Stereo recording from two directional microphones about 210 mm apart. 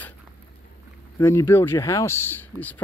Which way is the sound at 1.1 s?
15° left (ahead or behind).